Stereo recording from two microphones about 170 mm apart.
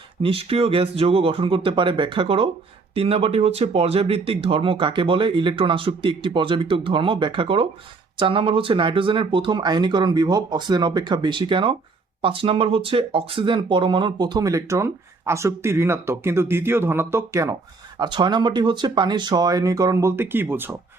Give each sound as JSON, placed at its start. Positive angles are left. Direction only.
{"t": 0.2, "sound": "speech", "side_deg": -35}